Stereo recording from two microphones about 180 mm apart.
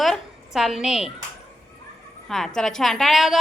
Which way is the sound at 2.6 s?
5° left (ahead or behind).